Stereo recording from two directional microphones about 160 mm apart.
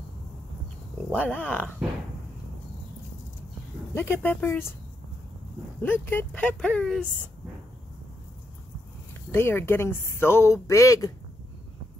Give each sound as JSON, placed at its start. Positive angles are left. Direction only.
{"t": 1.1, "sound": "speech", "side_deg": 10}
{"t": 3.9, "sound": "speech", "side_deg": 15}
{"t": 5.8, "sound": "speech", "side_deg": 10}
{"t": 9.3, "sound": "speech", "side_deg": 15}